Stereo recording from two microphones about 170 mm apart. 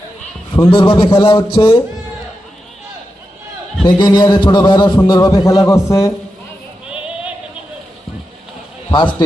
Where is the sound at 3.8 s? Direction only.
25° left (ahead or behind).